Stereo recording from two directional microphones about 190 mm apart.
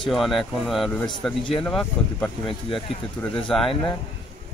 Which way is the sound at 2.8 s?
25° left (ahead or behind).